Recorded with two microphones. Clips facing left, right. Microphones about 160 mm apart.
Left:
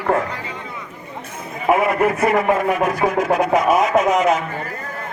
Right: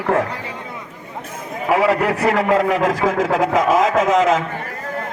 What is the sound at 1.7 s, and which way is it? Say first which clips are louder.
A man's voice: even; 90° right.